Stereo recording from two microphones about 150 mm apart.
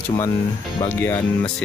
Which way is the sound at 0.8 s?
15° left (ahead or behind).